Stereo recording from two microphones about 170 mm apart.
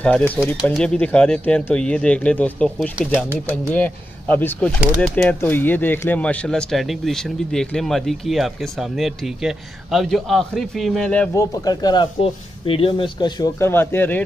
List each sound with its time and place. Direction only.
0.4 s speech: 10° left (ahead or behind)
3.0 s speech: 5° right (ahead or behind)
3.4 s speech: 10° left (ahead or behind)
11.3 s speech: 20° left (ahead or behind)
13.6 s speech: 15° left (ahead or behind)